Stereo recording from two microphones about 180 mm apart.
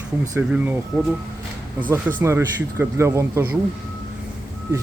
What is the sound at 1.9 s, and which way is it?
Speech, 10° right (ahead or behind).